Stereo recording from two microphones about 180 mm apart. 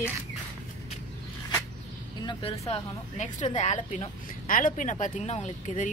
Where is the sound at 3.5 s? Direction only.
40° left (ahead or behind).